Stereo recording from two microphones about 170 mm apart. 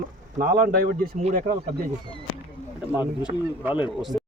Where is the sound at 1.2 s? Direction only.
50° right (ahead or behind).